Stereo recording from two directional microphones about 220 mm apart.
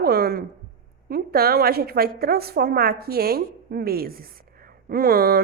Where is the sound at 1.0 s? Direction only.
45° right (ahead or behind).